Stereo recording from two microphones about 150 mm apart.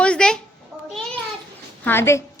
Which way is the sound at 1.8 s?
15° left (ahead or behind).